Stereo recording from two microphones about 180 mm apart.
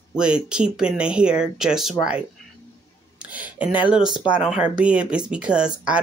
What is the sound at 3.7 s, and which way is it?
Speech, 25° left (ahead or behind).